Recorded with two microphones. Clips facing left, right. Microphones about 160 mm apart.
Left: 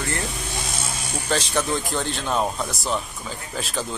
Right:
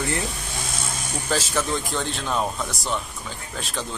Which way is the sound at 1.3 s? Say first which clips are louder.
Left 1 dB; centre (ahead or behind).